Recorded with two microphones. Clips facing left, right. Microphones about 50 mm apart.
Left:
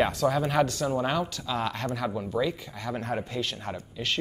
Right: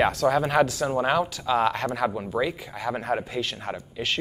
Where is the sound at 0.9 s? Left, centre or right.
Right.